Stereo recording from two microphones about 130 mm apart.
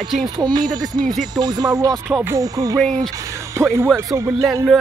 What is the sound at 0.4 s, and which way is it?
Speech, 30° right (ahead or behind).